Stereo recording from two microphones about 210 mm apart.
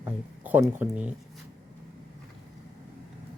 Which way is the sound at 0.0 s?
10° right (ahead or behind).